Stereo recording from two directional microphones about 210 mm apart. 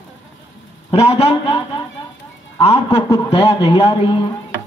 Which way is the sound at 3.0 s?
15° left (ahead or behind).